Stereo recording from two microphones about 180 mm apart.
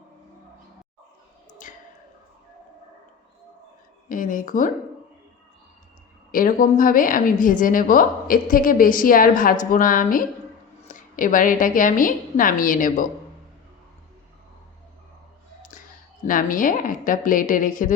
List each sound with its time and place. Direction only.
1.6 s a sound: 45° left (ahead or behind)
4.1 s a woman's voice: 50° left (ahead or behind)
6.3 s a woman's voice: 50° left (ahead or behind)
15.7 s clicking: 45° left (ahead or behind)
16.2 s a woman's voice: 50° left (ahead or behind)